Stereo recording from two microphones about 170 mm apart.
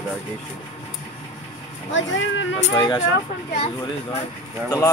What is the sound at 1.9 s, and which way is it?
Speech, 90° left.